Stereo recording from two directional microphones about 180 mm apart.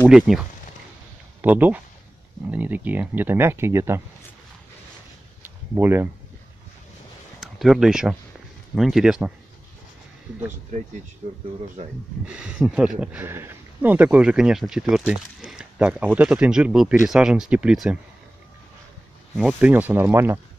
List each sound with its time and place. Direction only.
0.0 s speech: 5° right (ahead or behind)
5.4 s a sound: 10° right (ahead or behind)
7.3 s speech: centre (ahead or behind)
11.8 s speech: 45° right (ahead or behind)
12.3 s speech: 5° right (ahead or behind)
19.3 s speech: 5° right (ahead or behind)